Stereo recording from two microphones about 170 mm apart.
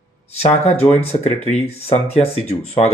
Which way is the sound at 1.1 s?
30° left (ahead or behind).